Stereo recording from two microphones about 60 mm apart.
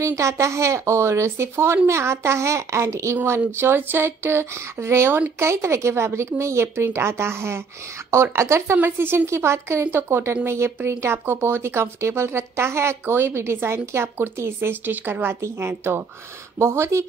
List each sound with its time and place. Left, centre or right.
0.0 s a woman's voice: right
3.3 s a woman's voice: right
8.8 s a woman's voice: right
15.4 s a woman's voice: right